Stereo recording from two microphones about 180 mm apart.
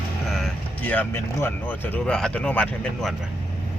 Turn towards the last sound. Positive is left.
turn(degrees=5)  # may be behind; listen again after turning